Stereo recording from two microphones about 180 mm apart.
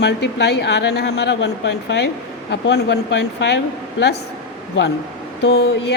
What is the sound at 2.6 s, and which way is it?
Speech, 75° left (ahead or behind).